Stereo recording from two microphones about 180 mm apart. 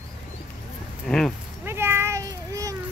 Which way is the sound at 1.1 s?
Centre (ahead or behind).